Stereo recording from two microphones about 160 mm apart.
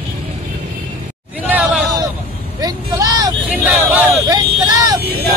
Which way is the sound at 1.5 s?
5° right (ahead or behind).